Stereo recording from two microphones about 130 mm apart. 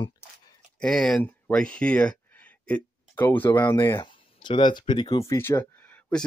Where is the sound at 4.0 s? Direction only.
35° left (ahead or behind).